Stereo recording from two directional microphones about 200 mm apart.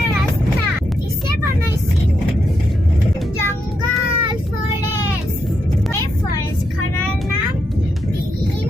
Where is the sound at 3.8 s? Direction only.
20° right (ahead or behind).